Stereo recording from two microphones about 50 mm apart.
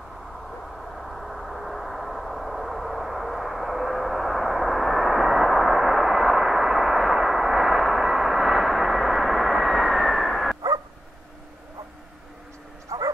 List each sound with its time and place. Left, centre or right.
1.0 s vehicle: centre
12.9 s bow-wow: right